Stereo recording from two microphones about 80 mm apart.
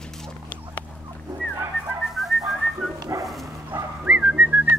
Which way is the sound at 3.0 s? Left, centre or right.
Right.